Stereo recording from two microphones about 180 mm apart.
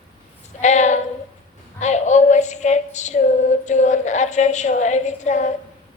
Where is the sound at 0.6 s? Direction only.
40° left (ahead or behind).